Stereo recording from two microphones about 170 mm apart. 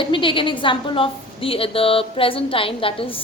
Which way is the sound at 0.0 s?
30° left (ahead or behind).